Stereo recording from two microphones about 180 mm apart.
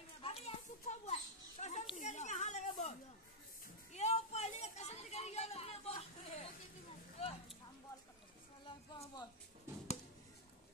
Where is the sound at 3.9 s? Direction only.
35° left (ahead or behind).